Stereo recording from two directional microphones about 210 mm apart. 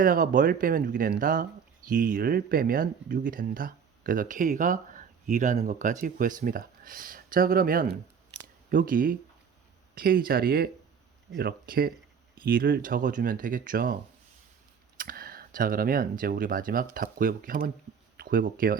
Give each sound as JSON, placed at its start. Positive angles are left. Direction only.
{"t": 0.0, "sound": "speech", "side_deg": -40}